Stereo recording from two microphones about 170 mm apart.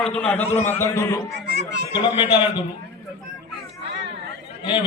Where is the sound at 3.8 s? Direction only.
90° right.